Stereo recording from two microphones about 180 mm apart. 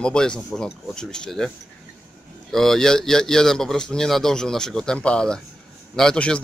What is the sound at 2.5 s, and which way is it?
A man's voice, centre (ahead or behind).